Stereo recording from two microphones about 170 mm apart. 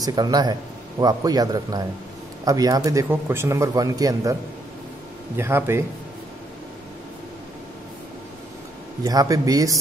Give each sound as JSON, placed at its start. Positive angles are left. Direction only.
{"t": 0.0, "sound": "a man's voice", "side_deg": -25}
{"t": 9.0, "sound": "a man's voice", "side_deg": -20}